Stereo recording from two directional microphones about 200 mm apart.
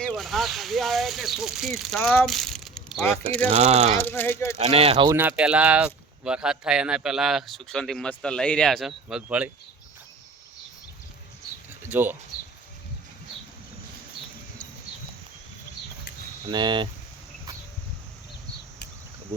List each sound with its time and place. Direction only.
0.0 s speech: centre (ahead or behind)
3.5 s speech: 30° right (ahead or behind)
3.9 s speech: 10° left (ahead or behind)
4.5 s speech: 30° right (ahead or behind)
5.1 s speech: 10° right (ahead or behind)
11.9 s speech: 10° right (ahead or behind)
16.5 s speech: 20° right (ahead or behind)